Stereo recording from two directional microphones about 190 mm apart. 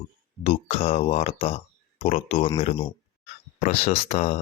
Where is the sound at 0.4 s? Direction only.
35° left (ahead or behind).